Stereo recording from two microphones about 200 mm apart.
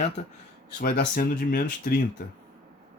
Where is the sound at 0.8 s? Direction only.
50° left (ahead or behind).